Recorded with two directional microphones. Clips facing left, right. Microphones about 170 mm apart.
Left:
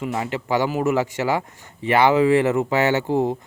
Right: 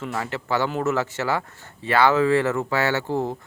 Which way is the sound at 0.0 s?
15° left (ahead or behind).